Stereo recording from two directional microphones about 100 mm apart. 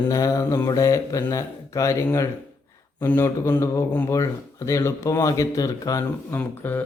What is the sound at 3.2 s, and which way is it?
Speech, 25° left (ahead or behind).